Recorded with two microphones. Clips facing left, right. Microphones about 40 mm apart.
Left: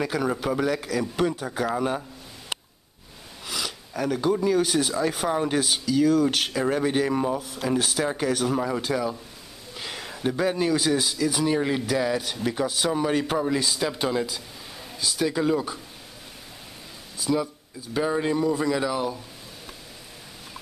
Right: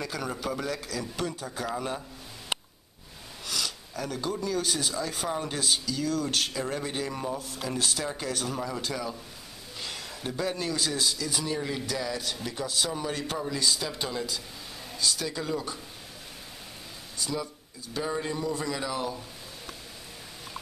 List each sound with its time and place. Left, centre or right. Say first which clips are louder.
0.0 s a man's voice: left 7 dB; centre
3.4 s speech: left 2 dB; centre
7.3 s a man's voice: left 7 dB; centre
11.4 s a man's voice: left 9 dB; left
17.2 s speech: left 8 dB; centre
18.4 s speech: left 7 dB; centre